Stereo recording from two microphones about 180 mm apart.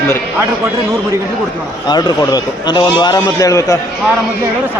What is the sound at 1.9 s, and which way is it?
Speech, 25° left (ahead or behind).